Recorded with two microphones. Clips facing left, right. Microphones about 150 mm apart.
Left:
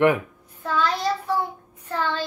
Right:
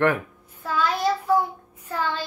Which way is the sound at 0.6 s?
10° right (ahead or behind).